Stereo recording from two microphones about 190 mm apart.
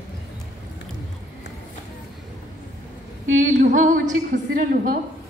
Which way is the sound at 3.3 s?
40° right (ahead or behind).